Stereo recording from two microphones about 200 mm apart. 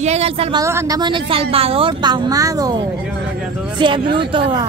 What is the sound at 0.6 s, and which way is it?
A woman's voice, 15° right (ahead or behind).